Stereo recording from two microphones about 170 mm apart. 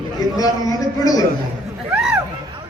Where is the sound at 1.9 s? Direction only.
5° right (ahead or behind).